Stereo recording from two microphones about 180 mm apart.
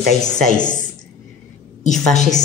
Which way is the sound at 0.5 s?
45° left (ahead or behind).